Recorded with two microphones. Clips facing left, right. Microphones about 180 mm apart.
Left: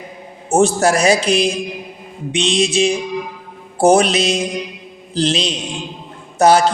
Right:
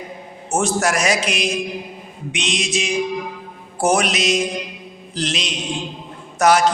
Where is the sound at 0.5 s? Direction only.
30° left (ahead or behind).